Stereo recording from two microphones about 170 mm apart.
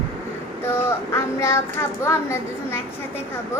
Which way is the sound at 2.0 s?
15° left (ahead or behind).